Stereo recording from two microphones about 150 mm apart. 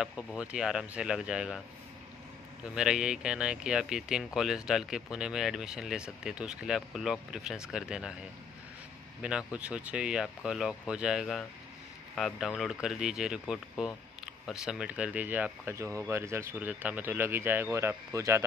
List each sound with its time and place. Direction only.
0.0 s speech: 5° right (ahead or behind)
2.7 s speech: 5° right (ahead or behind)
9.2 s speech: 5° right (ahead or behind)